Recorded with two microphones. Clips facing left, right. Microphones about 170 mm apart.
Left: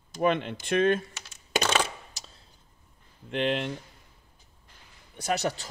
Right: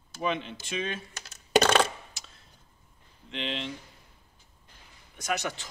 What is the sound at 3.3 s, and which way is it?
Speech, 55° left (ahead or behind).